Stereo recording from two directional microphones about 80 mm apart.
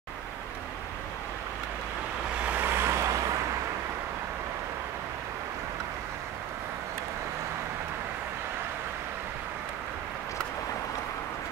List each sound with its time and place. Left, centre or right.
2.4 s vehicle: right